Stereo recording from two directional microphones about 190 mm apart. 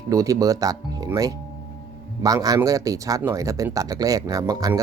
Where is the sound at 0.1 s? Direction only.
15° right (ahead or behind).